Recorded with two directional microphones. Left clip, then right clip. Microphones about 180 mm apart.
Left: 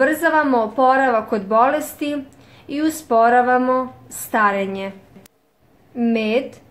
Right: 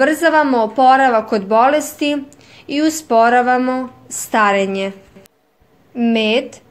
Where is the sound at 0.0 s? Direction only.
35° right (ahead or behind).